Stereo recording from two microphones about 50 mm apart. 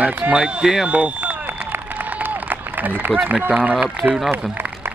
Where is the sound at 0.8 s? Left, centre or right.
Right.